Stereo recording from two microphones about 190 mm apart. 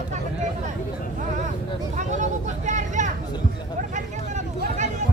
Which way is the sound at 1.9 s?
40° right (ahead or behind).